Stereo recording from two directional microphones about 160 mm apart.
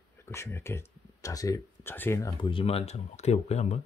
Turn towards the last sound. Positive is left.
turn(degrees=45)  # may be behind; listen again after turning